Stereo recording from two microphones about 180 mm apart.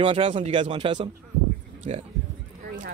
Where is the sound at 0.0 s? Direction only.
30° right (ahead or behind).